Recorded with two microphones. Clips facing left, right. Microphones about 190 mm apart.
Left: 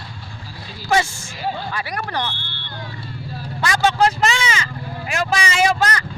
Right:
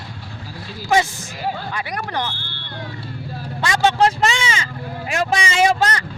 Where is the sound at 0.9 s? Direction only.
15° right (ahead or behind).